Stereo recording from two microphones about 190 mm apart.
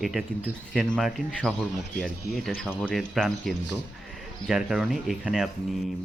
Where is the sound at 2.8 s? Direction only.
Centre (ahead or behind).